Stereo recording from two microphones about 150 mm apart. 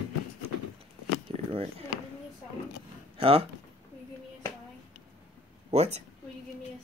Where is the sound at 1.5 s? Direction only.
40° right (ahead or behind).